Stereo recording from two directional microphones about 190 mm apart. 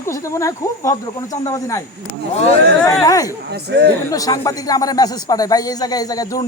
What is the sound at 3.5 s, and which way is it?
Speech, 60° right (ahead or behind).